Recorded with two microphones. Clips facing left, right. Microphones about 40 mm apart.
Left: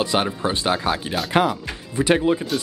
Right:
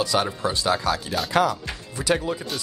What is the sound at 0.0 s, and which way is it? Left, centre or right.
Speech, left.